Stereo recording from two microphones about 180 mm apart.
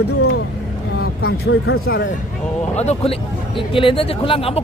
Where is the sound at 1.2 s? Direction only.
60° left (ahead or behind).